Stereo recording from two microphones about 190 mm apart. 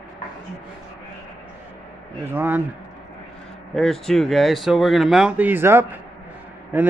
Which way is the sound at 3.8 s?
Centre (ahead or behind).